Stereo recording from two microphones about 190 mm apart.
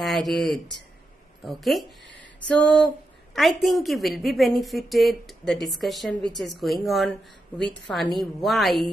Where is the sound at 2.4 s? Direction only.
5° left (ahead or behind).